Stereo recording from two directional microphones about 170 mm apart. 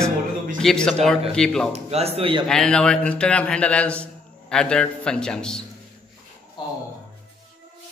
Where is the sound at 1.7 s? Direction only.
35° right (ahead or behind).